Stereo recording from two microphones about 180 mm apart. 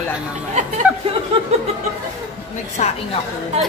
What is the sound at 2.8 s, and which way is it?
Speech, 40° left (ahead or behind).